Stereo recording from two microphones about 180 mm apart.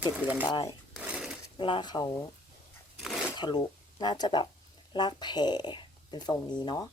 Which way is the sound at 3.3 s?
25° left (ahead or behind).